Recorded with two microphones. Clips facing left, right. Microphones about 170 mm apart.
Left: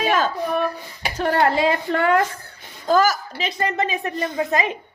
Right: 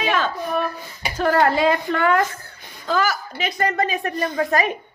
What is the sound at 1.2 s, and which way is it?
A woman's voice, 25° left (ahead or behind).